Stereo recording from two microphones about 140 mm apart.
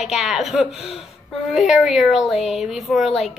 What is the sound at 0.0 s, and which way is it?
A woman's voice, centre (ahead or behind).